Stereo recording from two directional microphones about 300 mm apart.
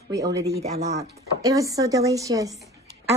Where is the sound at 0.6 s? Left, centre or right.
Right.